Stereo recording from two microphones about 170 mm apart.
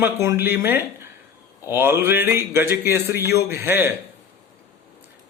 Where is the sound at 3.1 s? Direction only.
70° left (ahead or behind).